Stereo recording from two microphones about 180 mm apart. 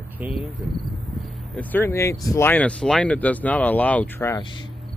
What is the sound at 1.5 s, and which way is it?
Speech, 10° left (ahead or behind).